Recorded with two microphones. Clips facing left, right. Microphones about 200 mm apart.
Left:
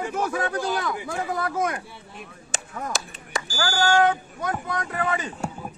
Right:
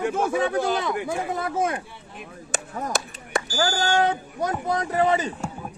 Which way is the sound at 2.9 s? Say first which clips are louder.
Right 4 dB; 60° right (ahead or behind).